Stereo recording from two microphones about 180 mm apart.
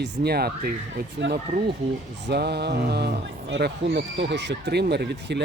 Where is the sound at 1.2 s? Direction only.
75° right (ahead or behind).